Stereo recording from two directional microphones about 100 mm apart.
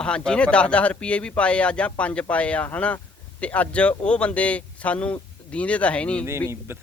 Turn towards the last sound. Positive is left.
turn(degrees=10)  # may be behind; listen again after turning